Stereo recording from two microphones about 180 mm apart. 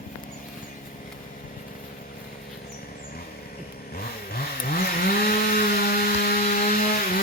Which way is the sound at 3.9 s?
55° left (ahead or behind).